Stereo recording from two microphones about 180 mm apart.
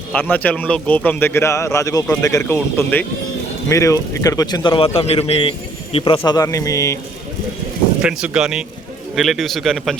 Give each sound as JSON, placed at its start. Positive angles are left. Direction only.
{"t": 0.1, "sound": "a man's voice", "side_deg": 10}
{"t": 8.0, "sound": "a man's voice", "side_deg": -5}